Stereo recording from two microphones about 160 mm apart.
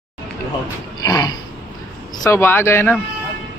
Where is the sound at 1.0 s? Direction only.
25° left (ahead or behind).